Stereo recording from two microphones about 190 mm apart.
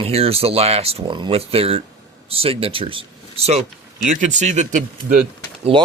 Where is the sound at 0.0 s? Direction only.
30° right (ahead or behind).